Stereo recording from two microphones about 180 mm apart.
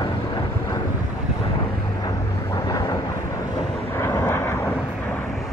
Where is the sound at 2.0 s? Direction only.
20° left (ahead or behind).